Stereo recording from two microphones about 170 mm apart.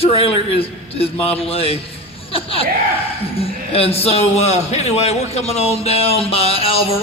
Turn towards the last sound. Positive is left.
turn(degrees=35)  # may be behind; listen again after turning